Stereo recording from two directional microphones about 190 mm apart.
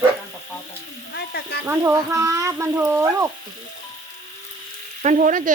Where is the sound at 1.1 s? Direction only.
60° left (ahead or behind).